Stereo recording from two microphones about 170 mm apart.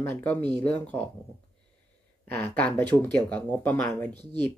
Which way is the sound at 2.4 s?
10° left (ahead or behind).